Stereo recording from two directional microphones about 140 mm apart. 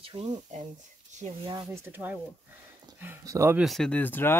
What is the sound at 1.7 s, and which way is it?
Speech, 15° right (ahead or behind).